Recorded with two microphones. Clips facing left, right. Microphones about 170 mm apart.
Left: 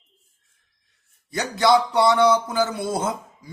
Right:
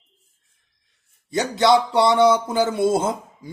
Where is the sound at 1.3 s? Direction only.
25° right (ahead or behind).